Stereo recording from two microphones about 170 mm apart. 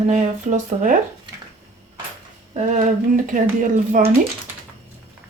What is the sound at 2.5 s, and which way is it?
Speech, 45° right (ahead or behind).